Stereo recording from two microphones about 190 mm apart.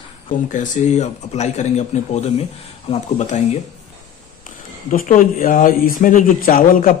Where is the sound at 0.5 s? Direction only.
40° left (ahead or behind).